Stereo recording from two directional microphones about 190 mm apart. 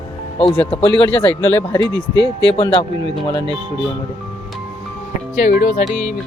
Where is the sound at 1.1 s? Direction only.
10° left (ahead or behind).